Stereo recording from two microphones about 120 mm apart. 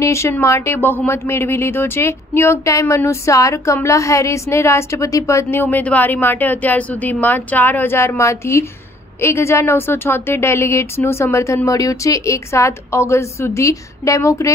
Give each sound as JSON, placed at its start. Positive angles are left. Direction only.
{"t": 0.0, "sound": "speech", "side_deg": 25}